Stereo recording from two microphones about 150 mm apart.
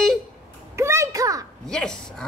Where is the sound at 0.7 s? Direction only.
20° right (ahead or behind).